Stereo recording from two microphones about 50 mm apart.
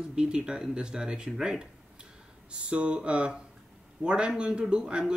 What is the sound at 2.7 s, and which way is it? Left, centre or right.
A man's voice, right.